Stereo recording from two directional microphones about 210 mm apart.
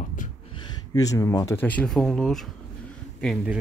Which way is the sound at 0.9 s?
15° left (ahead or behind).